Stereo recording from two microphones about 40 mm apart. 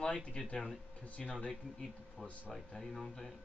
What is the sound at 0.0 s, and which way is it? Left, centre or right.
Speech, left.